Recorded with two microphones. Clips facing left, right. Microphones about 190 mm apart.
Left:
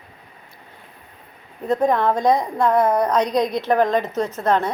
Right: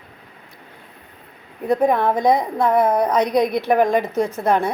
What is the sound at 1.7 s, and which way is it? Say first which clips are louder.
A woman's voice: right 1 dB; 10° right (ahead or behind).